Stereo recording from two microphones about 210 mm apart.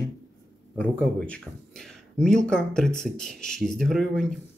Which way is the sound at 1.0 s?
Centre (ahead or behind).